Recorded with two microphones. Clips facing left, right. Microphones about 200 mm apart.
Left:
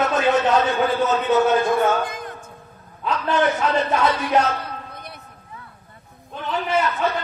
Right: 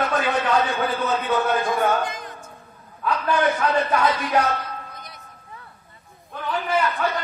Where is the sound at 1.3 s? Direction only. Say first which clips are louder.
Left 5 dB; 25° left (ahead or behind).